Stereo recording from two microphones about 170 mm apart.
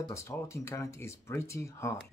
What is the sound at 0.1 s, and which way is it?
Speech, 15° left (ahead or behind).